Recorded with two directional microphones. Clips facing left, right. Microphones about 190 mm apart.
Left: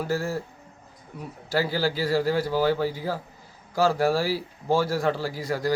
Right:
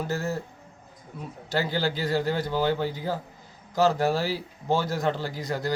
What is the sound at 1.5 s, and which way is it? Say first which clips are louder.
Speech: left 2 dB; 10° left (ahead or behind).